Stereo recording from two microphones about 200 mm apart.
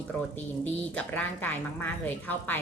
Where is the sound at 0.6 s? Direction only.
5° left (ahead or behind).